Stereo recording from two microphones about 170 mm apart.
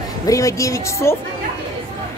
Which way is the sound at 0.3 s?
20° left (ahead or behind).